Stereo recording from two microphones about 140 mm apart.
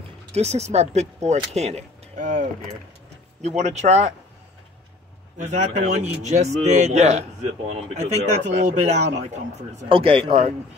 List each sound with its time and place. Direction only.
0.3 s speech: 50° right (ahead or behind)
3.4 s speech: 55° right (ahead or behind)
5.4 s speech: 55° right (ahead or behind)
9.8 s speech: 40° right (ahead or behind)